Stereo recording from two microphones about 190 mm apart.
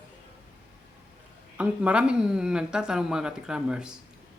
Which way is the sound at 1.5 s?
5° right (ahead or behind).